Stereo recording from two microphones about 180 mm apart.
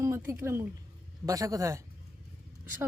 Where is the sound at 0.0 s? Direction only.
15° right (ahead or behind).